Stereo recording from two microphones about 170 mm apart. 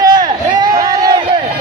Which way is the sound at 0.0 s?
25° right (ahead or behind).